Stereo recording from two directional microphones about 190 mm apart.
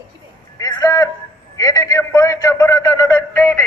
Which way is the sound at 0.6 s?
15° left (ahead or behind).